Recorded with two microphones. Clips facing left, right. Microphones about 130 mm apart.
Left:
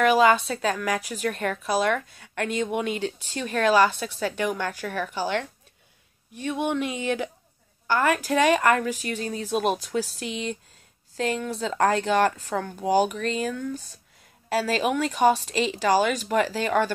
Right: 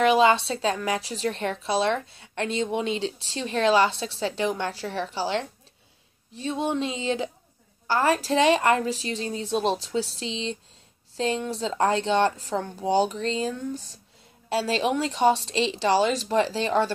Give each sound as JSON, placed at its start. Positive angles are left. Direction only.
{"t": 0.0, "sound": "a woman's voice", "side_deg": -25}